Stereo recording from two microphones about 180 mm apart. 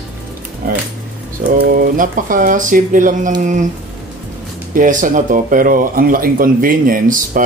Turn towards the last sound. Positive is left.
turn(degrees=-50)  # may be behind; listen again after turning